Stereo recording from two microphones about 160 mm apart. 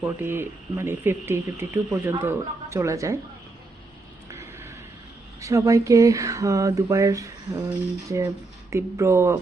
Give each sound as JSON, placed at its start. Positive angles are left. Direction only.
{"t": 0.0, "sound": "speech", "side_deg": -15}
{"t": 4.3, "sound": "vehicle", "side_deg": -15}
{"t": 5.4, "sound": "speech", "side_deg": -20}